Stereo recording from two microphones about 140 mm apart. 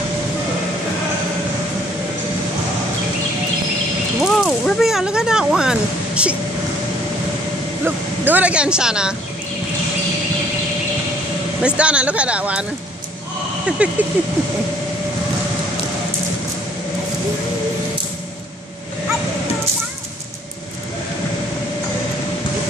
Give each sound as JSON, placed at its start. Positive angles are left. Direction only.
{"t": 4.2, "sound": "speech", "side_deg": 0}
{"t": 7.8, "sound": "speech", "side_deg": -10}
{"t": 11.6, "sound": "speech", "side_deg": -10}
{"t": 13.8, "sound": "speech", "side_deg": -10}